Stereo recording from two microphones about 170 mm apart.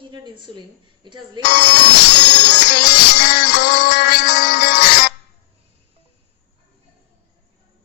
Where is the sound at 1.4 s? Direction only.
75° left (ahead or behind).